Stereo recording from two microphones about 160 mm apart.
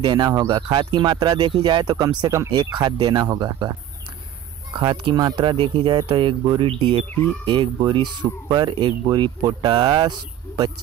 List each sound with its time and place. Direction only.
0.0 s speech: 25° right (ahead or behind)
4.7 s speech: 30° right (ahead or behind)
7.1 s speech: 10° left (ahead or behind)
7.4 s speech: 30° right (ahead or behind)